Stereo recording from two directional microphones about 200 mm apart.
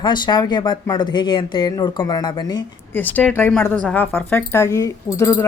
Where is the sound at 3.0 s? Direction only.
10° left (ahead or behind).